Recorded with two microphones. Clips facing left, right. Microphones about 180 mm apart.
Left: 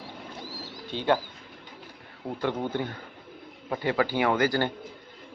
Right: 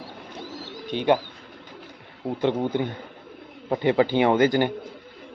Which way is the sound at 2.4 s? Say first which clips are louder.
Right 5 dB; 20° right (ahead or behind).